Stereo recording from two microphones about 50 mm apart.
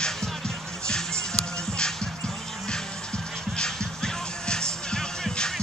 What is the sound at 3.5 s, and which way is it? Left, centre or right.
Music, centre.